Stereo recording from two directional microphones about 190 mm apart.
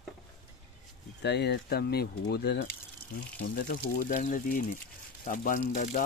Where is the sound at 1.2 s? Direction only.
60° left (ahead or behind).